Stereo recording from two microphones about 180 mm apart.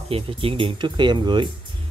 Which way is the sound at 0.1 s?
30° right (ahead or behind).